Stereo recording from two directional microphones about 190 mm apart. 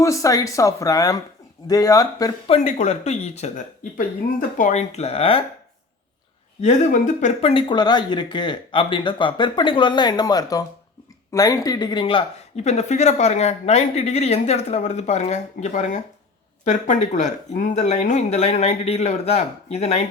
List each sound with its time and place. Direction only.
0.0 s speech: 15° left (ahead or behind)
2.5 s speech: 35° left (ahead or behind)
6.6 s speech: 40° left (ahead or behind)
7.5 s speech: 25° left (ahead or behind)